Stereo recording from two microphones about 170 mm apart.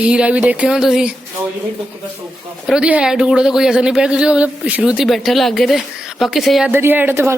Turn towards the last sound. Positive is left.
turn(degrees=-15)  # may be behind; listen again after turning